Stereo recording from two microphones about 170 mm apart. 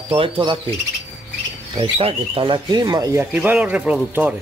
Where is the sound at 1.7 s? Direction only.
30° right (ahead or behind).